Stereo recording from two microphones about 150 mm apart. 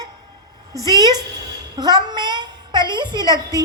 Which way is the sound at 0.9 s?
25° right (ahead or behind).